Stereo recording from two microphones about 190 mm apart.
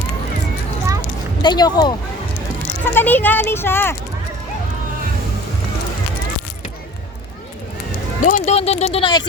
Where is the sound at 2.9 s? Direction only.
10° left (ahead or behind).